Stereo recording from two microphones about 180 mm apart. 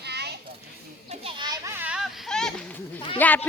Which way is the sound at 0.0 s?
65° right (ahead or behind).